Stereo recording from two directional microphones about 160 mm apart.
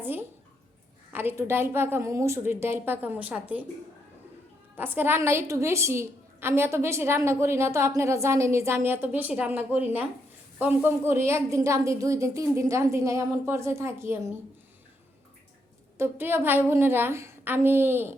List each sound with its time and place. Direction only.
0.0 s a sound: 10° right (ahead or behind)
1.1 s a woman's voice: 15° right (ahead or behind)
4.8 s a woman's voice: 15° right (ahead or behind)
16.0 s a woman's voice: 15° right (ahead or behind)